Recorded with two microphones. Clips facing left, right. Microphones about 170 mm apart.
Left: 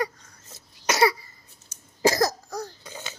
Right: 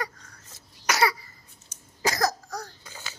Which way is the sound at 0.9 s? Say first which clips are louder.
Left 3 dB; 25° left (ahead or behind).